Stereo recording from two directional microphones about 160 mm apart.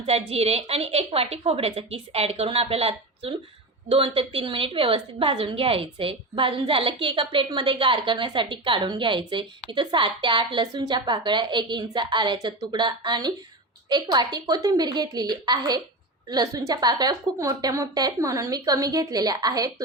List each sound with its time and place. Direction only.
0.0 s a woman's voice: 40° right (ahead or behind); by 19.7 s 25° right (ahead or behind)